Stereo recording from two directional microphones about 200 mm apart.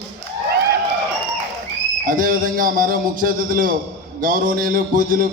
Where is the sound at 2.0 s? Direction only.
45° right (ahead or behind).